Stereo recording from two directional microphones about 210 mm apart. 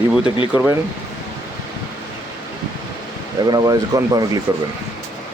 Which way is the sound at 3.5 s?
15° right (ahead or behind).